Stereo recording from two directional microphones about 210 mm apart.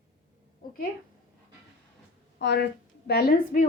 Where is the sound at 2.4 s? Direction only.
55° left (ahead or behind).